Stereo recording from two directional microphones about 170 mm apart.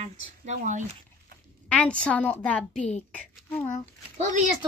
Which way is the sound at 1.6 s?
5° left (ahead or behind).